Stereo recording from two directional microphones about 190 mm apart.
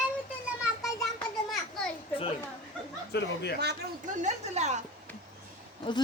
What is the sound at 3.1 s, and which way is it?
Speech, 60° left (ahead or behind).